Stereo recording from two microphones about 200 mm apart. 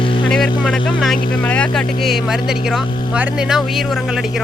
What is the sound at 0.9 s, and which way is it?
Speech, centre (ahead or behind).